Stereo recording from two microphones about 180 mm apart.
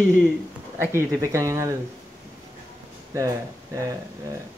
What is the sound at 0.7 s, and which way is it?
Speech, 15° right (ahead or behind).